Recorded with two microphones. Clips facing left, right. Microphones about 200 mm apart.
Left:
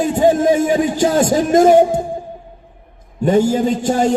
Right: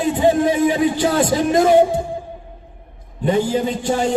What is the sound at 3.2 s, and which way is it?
Speech, 45° left (ahead or behind).